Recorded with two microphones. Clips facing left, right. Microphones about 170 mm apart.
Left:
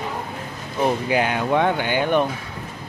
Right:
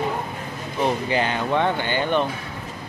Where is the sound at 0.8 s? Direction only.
10° left (ahead or behind).